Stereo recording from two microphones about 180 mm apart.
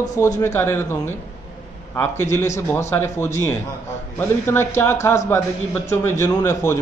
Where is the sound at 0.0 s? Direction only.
20° left (ahead or behind).